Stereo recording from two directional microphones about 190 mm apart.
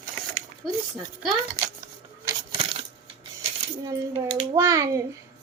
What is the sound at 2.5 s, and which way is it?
Coin, 25° right (ahead or behind).